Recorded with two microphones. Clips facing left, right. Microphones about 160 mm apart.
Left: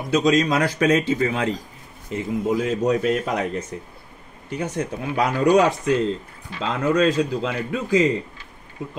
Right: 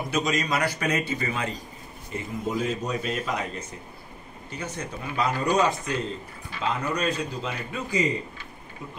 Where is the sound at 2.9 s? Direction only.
55° left (ahead or behind).